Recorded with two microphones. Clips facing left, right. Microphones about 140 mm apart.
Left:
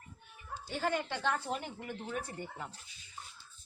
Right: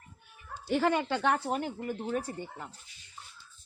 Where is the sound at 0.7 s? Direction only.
90° right.